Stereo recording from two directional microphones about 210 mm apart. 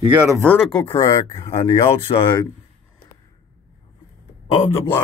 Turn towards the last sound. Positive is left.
turn(degrees=10)  # may be behind; listen again after turning